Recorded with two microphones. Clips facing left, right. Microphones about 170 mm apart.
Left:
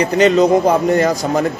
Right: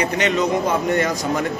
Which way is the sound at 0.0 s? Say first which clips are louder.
Left 8 dB; 35° left (ahead or behind).